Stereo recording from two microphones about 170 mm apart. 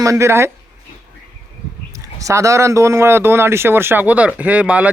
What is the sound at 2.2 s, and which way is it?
A man's voice, 15° right (ahead or behind).